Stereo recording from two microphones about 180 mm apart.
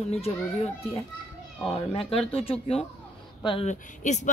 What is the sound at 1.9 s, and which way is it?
Speech, 30° left (ahead or behind).